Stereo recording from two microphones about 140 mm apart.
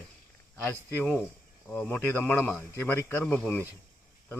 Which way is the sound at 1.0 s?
10° left (ahead or behind).